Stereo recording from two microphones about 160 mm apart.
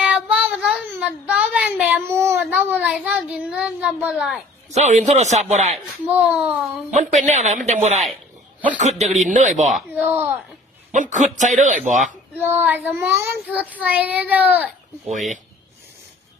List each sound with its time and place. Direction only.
0.0 s child singing: 5° right (ahead or behind)
3.5 s a sound: 5° right (ahead or behind)
4.7 s speech: 45° right (ahead or behind)
6.1 s a child's voice: 5° right (ahead or behind)
6.9 s speech: 45° right (ahead or behind)
9.6 s a child's voice: centre (ahead or behind)
10.9 s speech: 50° right (ahead or behind)
12.4 s a child's voice: 10° right (ahead or behind)